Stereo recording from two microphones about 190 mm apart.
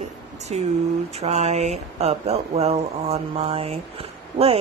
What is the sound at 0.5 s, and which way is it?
Speech, 35° right (ahead or behind).